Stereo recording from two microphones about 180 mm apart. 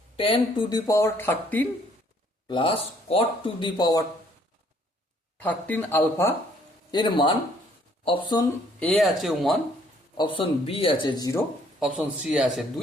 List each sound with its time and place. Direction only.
0.2 s speech: 25° left (ahead or behind); by 1.6 s 10° left (ahead or behind)
2.5 s speech: 30° left (ahead or behind)
5.4 s speech: 10° left (ahead or behind)
6.9 s speech: 25° left (ahead or behind)
8.8 s a man's voice: 5° left (ahead or behind)
10.2 s speech: 25° left (ahead or behind)
11.8 s a man's voice: 5° right (ahead or behind)